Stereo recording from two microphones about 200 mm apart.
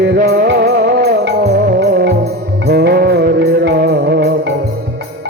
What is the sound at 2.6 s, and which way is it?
Music, 55° right (ahead or behind).